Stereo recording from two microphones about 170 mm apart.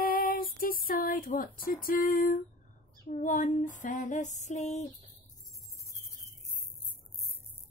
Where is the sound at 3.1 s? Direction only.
50° left (ahead or behind).